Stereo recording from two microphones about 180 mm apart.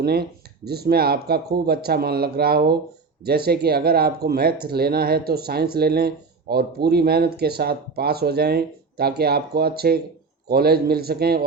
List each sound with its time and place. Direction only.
0.0 s speech: 60° right (ahead or behind)